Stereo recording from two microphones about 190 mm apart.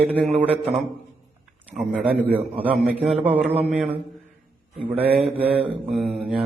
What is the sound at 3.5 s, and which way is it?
Speech, 35° right (ahead or behind).